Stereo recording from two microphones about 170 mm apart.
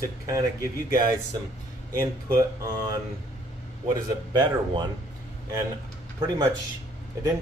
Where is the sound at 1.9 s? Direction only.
20° right (ahead or behind).